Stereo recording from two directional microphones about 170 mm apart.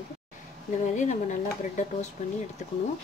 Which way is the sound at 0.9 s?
45° left (ahead or behind).